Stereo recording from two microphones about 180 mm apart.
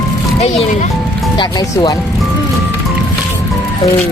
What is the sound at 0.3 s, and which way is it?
Speech, 40° left (ahead or behind).